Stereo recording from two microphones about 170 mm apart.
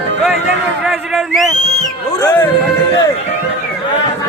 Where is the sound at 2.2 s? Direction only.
15° left (ahead or behind).